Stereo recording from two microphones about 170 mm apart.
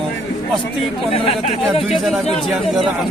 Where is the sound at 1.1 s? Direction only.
35° left (ahead or behind).